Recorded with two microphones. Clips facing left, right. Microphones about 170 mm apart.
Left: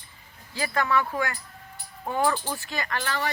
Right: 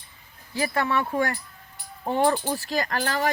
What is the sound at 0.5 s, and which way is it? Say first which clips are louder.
Speech: right 1 dB; 25° right (ahead or behind).